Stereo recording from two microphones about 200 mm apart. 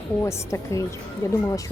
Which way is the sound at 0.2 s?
15° left (ahead or behind).